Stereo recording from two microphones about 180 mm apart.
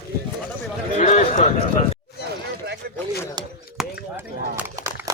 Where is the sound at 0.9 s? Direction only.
40° left (ahead or behind).